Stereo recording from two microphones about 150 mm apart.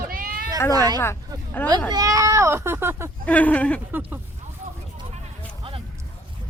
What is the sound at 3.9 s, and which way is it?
Speech, 10° right (ahead or behind).